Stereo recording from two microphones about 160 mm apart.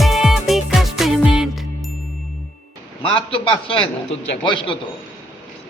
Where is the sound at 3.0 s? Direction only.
30° left (ahead or behind).